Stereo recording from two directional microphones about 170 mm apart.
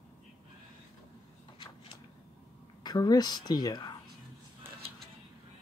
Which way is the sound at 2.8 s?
25° left (ahead or behind).